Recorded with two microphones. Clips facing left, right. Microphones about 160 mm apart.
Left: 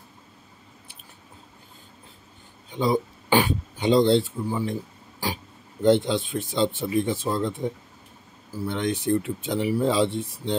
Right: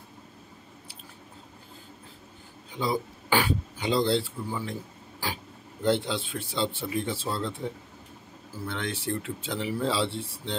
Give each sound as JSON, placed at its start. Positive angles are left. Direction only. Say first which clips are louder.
{"t": 2.7, "sound": "speech", "louder": "left 6 dB", "side_deg": 20}